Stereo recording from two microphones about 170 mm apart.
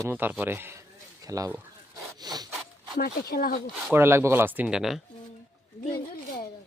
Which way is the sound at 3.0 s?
65° left (ahead or behind).